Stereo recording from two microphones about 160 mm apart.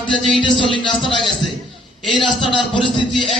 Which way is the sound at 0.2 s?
5° left (ahead or behind).